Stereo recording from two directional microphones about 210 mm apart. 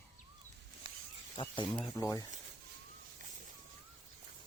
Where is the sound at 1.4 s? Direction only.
20° left (ahead or behind).